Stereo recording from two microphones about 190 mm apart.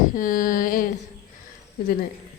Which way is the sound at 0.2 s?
45° left (ahead or behind).